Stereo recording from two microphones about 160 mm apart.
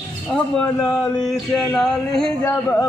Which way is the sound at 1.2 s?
Centre (ahead or behind).